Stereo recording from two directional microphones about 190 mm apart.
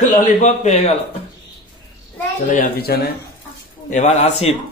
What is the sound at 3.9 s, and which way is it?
Speech, 40° left (ahead or behind).